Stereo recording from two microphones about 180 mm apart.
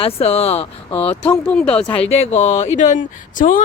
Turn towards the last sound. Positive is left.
turn(degrees=50)  # may be behind; listen again after turning